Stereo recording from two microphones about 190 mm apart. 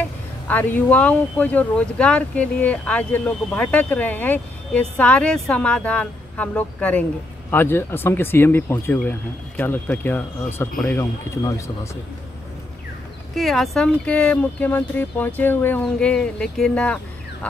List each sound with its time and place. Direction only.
0.0 s speech: 10° left (ahead or behind)
13.4 s speech: centre (ahead or behind)